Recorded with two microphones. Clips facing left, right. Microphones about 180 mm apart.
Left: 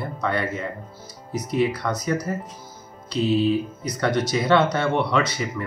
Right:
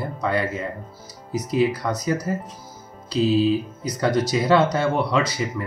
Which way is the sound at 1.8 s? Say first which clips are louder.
Right 1 dB; 15° right (ahead or behind).